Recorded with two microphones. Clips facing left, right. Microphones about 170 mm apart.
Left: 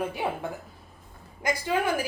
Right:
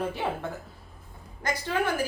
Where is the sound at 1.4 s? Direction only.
10° left (ahead or behind).